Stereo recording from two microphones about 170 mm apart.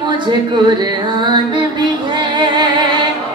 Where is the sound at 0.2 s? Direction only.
25° right (ahead or behind).